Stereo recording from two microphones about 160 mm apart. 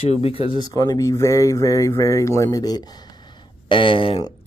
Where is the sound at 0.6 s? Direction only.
25° left (ahead or behind).